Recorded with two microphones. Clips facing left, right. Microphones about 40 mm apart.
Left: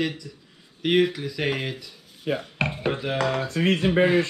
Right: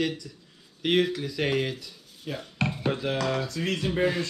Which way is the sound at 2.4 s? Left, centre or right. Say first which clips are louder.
Left 2 dB; left.